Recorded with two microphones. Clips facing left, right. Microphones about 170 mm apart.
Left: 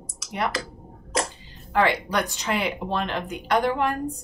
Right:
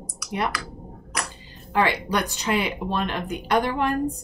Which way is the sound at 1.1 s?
25° left (ahead or behind).